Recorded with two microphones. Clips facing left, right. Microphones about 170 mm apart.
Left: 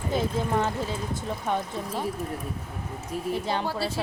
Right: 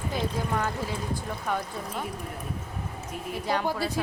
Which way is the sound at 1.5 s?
30° left (ahead or behind).